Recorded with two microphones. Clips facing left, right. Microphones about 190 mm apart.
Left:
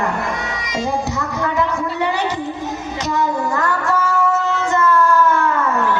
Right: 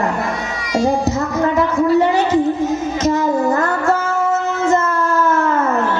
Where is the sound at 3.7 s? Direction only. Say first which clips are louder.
Right 2 dB; 45° right (ahead or behind).